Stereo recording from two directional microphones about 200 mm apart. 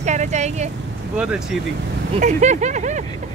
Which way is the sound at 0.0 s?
35° right (ahead or behind).